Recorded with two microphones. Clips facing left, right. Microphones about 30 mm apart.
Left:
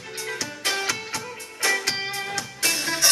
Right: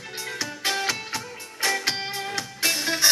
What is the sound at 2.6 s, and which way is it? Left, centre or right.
Music, centre.